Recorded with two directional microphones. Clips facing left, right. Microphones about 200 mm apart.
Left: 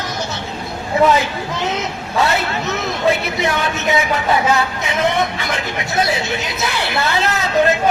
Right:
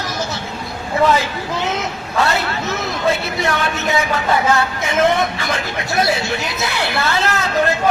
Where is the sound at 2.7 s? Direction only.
20° left (ahead or behind).